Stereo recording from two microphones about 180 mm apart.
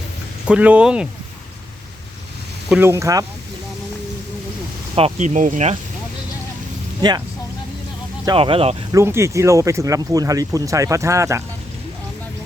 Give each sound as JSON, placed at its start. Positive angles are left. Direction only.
{"t": 0.4, "sound": "speech", "side_deg": -5}
{"t": 2.6, "sound": "speech", "side_deg": -10}
{"t": 4.9, "sound": "speech", "side_deg": -35}
{"t": 8.4, "sound": "speech", "side_deg": -30}
{"t": 8.9, "sound": "speech", "side_deg": -15}